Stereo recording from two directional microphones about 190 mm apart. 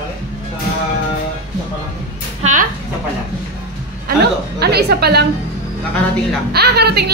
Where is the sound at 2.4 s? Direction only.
35° right (ahead or behind).